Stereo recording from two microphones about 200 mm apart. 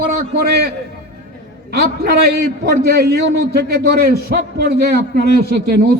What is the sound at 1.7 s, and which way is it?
A man's voice, 50° right (ahead or behind).